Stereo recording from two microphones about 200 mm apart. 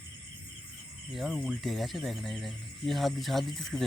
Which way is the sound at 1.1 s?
Centre (ahead or behind).